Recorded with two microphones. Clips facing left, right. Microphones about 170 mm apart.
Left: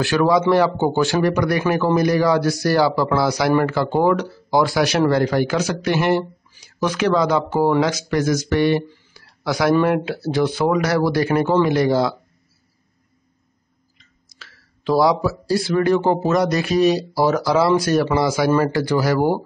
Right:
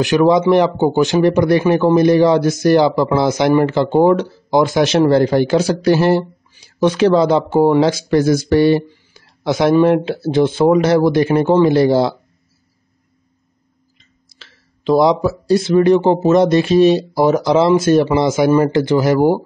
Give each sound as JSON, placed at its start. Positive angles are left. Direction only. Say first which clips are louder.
{"t": 0.0, "sound": "a man's voice", "louder": "right 4 dB", "side_deg": -20}
{"t": 14.4, "sound": "a man's voice", "louder": "right 4 dB", "side_deg": -20}